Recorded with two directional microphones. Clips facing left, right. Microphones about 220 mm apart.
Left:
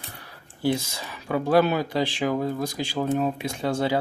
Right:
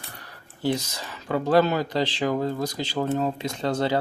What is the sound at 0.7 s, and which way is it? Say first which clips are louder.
Speech: even; 10° left (ahead or behind).